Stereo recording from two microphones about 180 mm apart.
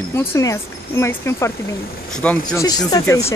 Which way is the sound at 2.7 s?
20° left (ahead or behind).